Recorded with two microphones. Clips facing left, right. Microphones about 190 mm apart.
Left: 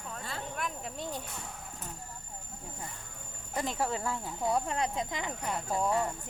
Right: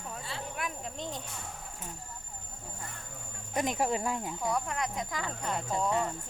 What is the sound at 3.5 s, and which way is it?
Speech, 15° right (ahead or behind).